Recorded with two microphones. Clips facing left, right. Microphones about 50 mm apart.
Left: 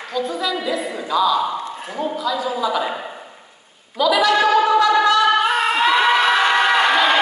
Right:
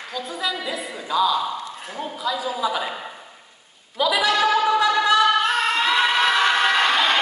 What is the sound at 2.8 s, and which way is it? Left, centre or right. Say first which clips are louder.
Speech: left 4 dB; centre.